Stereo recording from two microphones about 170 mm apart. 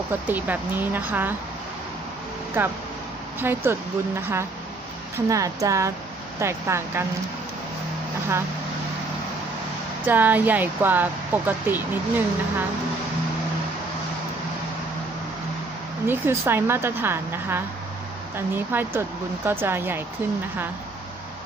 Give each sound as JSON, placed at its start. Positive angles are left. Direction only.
{"t": 0.3, "sound": "speech", "side_deg": -10}
{"t": 2.6, "sound": "speech", "side_deg": -15}
{"t": 10.1, "sound": "speech", "side_deg": -10}
{"t": 16.0, "sound": "speech", "side_deg": -15}